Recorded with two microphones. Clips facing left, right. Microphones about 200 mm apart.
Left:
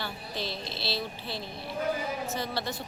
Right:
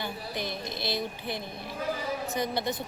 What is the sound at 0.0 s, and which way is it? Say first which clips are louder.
A woman's voice: right 2 dB; 15° right (ahead or behind).